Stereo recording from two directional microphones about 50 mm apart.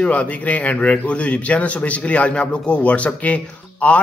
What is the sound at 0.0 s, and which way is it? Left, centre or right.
A man's voice, left.